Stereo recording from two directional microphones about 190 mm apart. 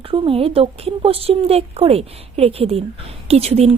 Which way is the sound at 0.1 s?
30° right (ahead or behind).